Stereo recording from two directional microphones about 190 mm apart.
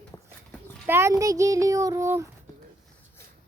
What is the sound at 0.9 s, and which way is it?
Speech, 15° right (ahead or behind).